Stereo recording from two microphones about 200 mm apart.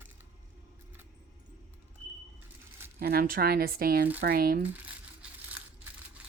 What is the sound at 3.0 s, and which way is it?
Speech, 50° right (ahead or behind).